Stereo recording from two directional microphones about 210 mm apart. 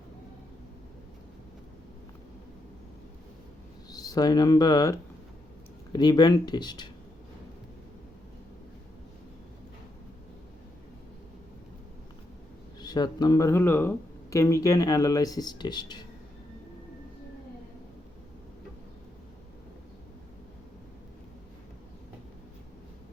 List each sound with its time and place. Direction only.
3.9 s speech: 15° left (ahead or behind)
12.8 s speech: 20° left (ahead or behind)